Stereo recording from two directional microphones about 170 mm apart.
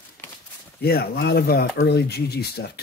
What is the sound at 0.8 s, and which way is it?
Speech, 65° left (ahead or behind).